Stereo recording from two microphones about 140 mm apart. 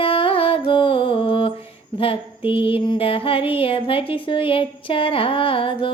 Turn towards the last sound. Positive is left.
turn(degrees=40)  # may be behind; listen again after turning